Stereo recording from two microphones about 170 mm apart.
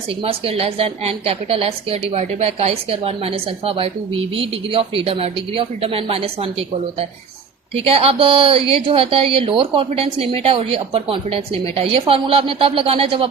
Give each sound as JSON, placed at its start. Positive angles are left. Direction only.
{"t": 0.3, "sound": "a woman's voice", "side_deg": -35}
{"t": 7.9, "sound": "a woman's voice", "side_deg": -35}